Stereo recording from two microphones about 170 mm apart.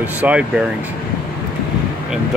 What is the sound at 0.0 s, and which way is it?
Speech, 10° right (ahead or behind).